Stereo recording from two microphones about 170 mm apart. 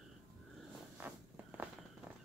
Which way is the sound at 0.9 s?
10° right (ahead or behind).